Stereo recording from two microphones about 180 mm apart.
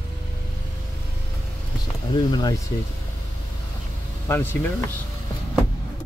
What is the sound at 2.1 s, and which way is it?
Speech, 20° left (ahead or behind).